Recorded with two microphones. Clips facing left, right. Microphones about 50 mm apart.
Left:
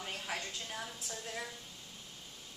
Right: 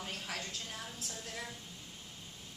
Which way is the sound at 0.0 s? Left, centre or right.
Centre.